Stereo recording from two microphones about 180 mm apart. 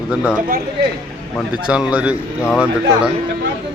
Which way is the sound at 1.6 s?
5° right (ahead or behind).